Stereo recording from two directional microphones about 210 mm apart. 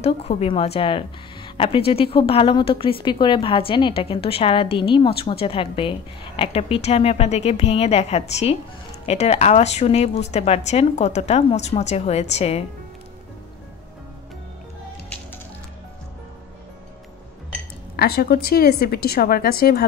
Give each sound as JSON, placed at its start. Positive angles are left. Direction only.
{"t": 0.0, "sound": "a woman's voice", "side_deg": 30}
{"t": 17.9, "sound": "a woman's voice", "side_deg": 50}